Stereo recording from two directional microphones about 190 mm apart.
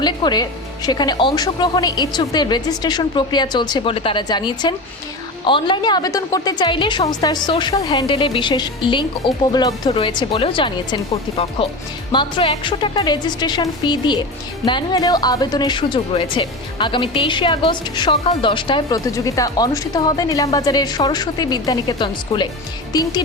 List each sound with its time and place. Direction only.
0.0 s speech: 20° left (ahead or behind)